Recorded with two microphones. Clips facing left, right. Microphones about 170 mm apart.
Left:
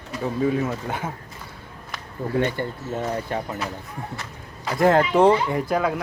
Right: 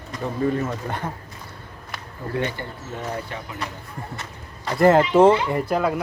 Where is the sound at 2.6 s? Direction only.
50° left (ahead or behind).